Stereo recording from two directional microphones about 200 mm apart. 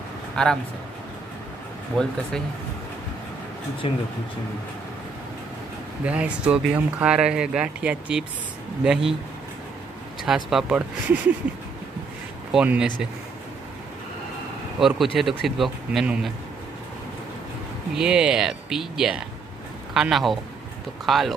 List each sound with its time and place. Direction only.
0.4 s speech: 5° left (ahead or behind)
2.0 s speech: centre (ahead or behind)
3.8 s speech: 25° left (ahead or behind)
6.0 s speech: 5° right (ahead or behind)
10.2 s speech: 5° right (ahead or behind)
11.4 s a sound: 5° right (ahead or behind)
12.5 s speech: 5° right (ahead or behind)
14.8 s speech: centre (ahead or behind)
17.9 s speech: 5° right (ahead or behind)